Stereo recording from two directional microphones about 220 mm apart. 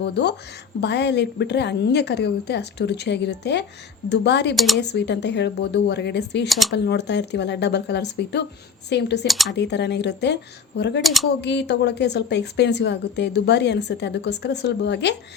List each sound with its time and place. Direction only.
0.0 s a woman's voice: 50° left (ahead or behind)
4.5 s speech: centre (ahead or behind)
4.8 s a woman's voice: 50° left (ahead or behind)
6.5 s speech: centre (ahead or behind)
6.7 s a woman's voice: 50° left (ahead or behind)
9.2 s speech: centre (ahead or behind)
9.5 s a woman's voice: 50° left (ahead or behind)
11.0 s speech: centre (ahead or behind)
11.3 s a woman's voice: 50° left (ahead or behind)